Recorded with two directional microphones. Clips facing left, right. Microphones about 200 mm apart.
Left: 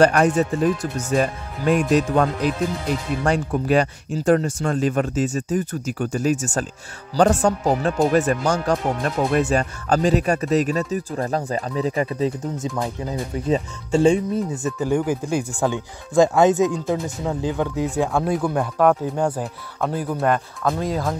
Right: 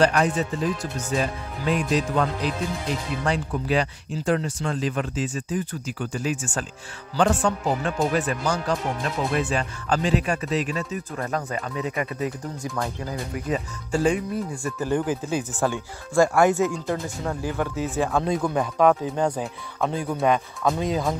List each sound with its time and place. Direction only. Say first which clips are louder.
0.0 s speech: left 5 dB; 50° left (ahead or behind); by 16.8 s 20° left (ahead or behind)
16.8 s speech: left 4 dB; 5° left (ahead or behind)